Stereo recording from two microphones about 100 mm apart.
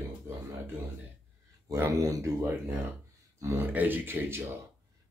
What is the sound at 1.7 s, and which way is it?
Speech, 30° right (ahead or behind).